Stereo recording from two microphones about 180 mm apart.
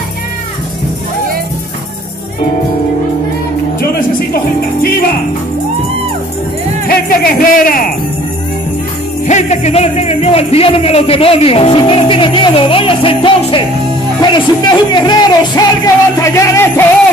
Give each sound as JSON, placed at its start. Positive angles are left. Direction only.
{"t": 6.9, "sound": "speech", "side_deg": 50}
{"t": 9.3, "sound": "speech", "side_deg": 40}
{"t": 14.2, "sound": "music", "side_deg": 25}